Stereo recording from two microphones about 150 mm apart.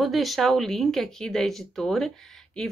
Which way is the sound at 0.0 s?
Centre (ahead or behind).